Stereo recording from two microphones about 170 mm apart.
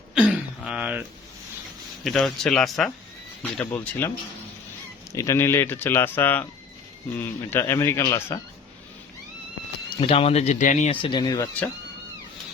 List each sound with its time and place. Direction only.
0.1 s throat clearing: 5° right (ahead or behind)
2.0 s speech: centre (ahead or behind)
3.6 s speech: 10° left (ahead or behind)
5.1 s speech: 20° left (ahead or behind)
10.0 s speech: 35° left (ahead or behind)
11.0 s speech: 25° left (ahead or behind)